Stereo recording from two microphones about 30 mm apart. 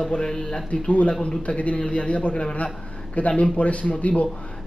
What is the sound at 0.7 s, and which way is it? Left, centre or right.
Speech, left.